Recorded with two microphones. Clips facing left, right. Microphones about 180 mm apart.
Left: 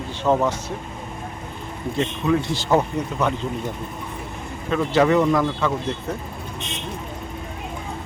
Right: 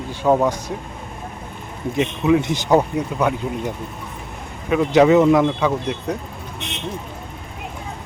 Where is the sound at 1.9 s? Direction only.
15° right (ahead or behind).